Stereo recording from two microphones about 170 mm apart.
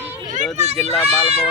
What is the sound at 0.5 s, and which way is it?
Speech, 40° right (ahead or behind).